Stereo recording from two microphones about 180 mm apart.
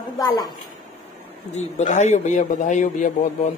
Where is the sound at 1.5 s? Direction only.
40° left (ahead or behind).